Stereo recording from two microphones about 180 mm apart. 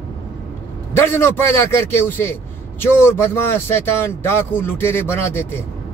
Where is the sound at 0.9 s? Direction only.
15° left (ahead or behind).